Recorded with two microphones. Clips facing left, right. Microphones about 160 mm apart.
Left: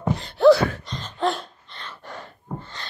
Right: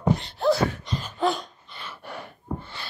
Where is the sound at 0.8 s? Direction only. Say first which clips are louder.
Even; 5° right (ahead or behind).